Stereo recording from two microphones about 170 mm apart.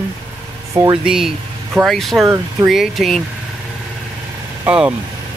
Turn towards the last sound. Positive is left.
turn(degrees=-5)  # may be behind; listen again after turning